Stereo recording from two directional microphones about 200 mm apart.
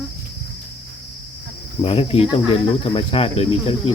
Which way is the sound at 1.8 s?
30° left (ahead or behind).